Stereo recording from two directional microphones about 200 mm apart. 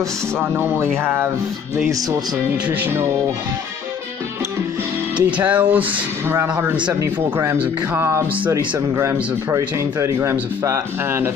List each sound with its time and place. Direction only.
0.4 s speech: 10° right (ahead or behind)
5.1 s speech: 10° right (ahead or behind)